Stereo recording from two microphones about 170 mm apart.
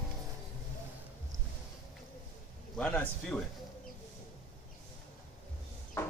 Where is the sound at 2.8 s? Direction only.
10° left (ahead or behind).